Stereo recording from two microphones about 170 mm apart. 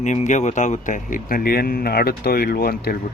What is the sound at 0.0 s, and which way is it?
Speech, 45° left (ahead or behind).